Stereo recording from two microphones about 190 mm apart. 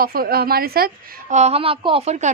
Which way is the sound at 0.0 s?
50° right (ahead or behind).